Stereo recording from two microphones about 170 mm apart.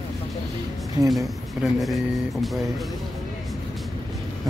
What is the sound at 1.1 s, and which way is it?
Speech, centre (ahead or behind).